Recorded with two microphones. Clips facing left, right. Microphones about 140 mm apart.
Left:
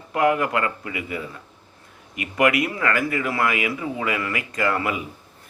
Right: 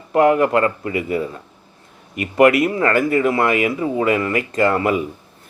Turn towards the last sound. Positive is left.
turn(degrees=-35)  # may be behind; listen again after turning